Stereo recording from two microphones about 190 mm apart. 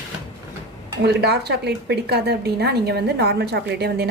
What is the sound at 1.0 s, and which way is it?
Speech, 60° right (ahead or behind).